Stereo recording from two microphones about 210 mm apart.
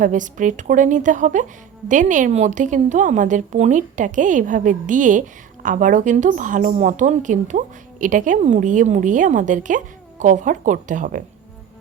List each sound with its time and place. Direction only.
0.0 s a woman's voice: 35° right (ahead or behind)